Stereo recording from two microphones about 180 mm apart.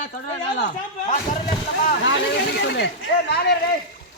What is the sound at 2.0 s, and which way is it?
Speech, 75° left (ahead or behind).